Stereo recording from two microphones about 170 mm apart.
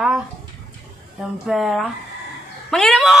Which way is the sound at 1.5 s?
Centre (ahead or behind).